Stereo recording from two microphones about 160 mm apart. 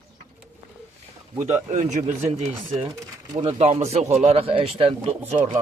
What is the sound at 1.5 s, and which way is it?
Speech, 45° right (ahead or behind).